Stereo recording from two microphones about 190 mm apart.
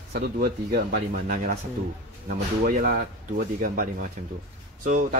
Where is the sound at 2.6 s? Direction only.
50° right (ahead or behind).